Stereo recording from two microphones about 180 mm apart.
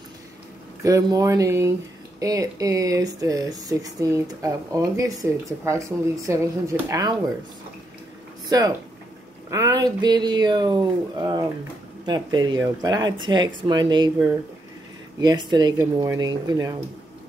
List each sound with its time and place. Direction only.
0.8 s speech: 20° right (ahead or behind)
8.5 s speech: 20° right (ahead or behind)
15.1 s speech: 20° right (ahead or behind)